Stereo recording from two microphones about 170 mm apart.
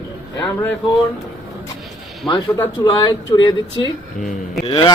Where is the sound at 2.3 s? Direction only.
25° left (ahead or behind).